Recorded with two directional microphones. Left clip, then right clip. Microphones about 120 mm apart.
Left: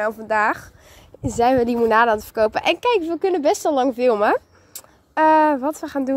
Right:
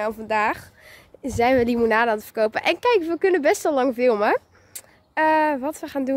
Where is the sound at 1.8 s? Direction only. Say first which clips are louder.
Left 4 dB; 10° left (ahead or behind).